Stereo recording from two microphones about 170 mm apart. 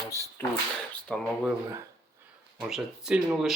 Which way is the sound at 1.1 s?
5° left (ahead or behind).